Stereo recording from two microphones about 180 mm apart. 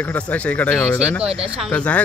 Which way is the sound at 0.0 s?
10° left (ahead or behind).